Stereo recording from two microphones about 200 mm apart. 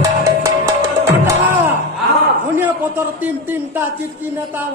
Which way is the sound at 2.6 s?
10° right (ahead or behind).